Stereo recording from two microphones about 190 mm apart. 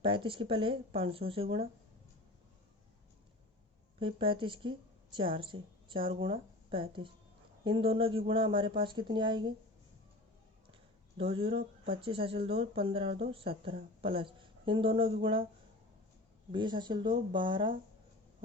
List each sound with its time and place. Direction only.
0.0 s speech: 30° right (ahead or behind)
4.0 s a woman's voice: 30° right (ahead or behind)
11.2 s speech: 30° right (ahead or behind)
16.5 s speech: 25° right (ahead or behind)